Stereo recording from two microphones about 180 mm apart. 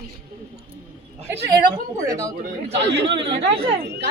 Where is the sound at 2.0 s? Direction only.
20° right (ahead or behind).